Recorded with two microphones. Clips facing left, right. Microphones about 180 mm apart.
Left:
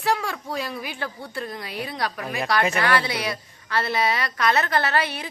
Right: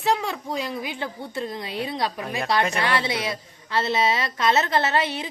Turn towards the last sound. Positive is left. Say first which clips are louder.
# right 1 dB
turn(degrees=-20)  # may be behind; listen again after turning